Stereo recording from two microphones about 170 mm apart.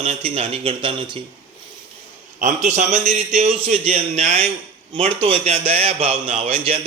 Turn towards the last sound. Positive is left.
turn(degrees=-35)  # may be behind; listen again after turning